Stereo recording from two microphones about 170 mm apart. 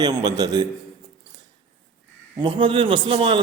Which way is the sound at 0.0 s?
25° right (ahead or behind).